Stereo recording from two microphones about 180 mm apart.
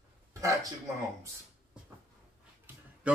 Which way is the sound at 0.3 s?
20° right (ahead or behind).